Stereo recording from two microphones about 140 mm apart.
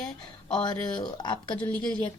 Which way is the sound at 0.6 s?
30° left (ahead or behind).